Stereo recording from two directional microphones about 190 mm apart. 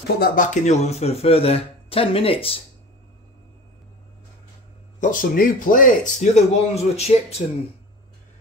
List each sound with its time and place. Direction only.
0.2 s a man's voice: 40° left (ahead or behind)
5.0 s a man's voice: 45° left (ahead or behind)